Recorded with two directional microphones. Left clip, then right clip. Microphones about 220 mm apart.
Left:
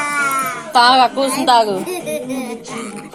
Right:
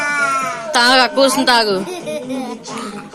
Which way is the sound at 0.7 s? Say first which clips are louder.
Left 1 dB; 30° right (ahead or behind).